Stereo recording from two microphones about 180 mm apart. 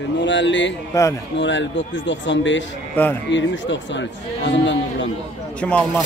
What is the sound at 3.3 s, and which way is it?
Speech, 90° left.